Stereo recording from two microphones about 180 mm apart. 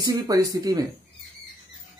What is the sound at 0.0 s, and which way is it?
Speech, 20° right (ahead or behind).